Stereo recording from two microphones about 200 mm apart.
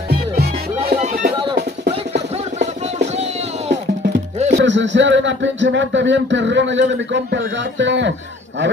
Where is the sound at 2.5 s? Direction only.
35° right (ahead or behind).